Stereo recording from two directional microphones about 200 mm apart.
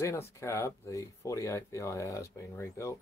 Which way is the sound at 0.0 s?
15° left (ahead or behind).